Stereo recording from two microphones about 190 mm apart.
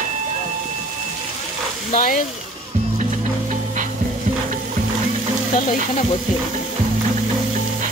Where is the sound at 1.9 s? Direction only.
45° left (ahead or behind).